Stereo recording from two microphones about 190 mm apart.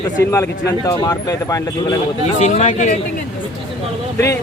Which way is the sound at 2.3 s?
40° left (ahead or behind).